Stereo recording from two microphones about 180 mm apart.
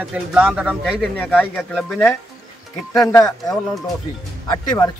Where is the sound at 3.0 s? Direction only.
15° left (ahead or behind).